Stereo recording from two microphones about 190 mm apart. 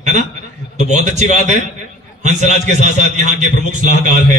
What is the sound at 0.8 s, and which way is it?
Speech, 40° right (ahead or behind).